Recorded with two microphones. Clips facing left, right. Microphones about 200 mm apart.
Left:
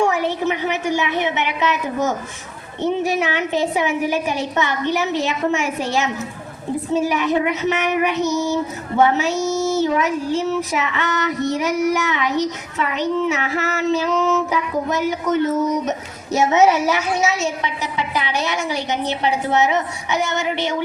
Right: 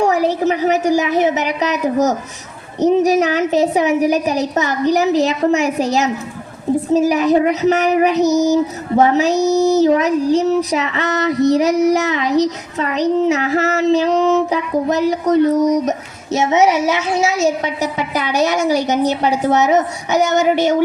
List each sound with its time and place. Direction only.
0.0 s child singing: 35° right (ahead or behind)
16.3 s a child's voice: 20° right (ahead or behind)
17.2 s a woman's voice: 35° right (ahead or behind)